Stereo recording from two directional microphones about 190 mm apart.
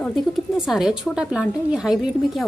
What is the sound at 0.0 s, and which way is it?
Speech, centre (ahead or behind).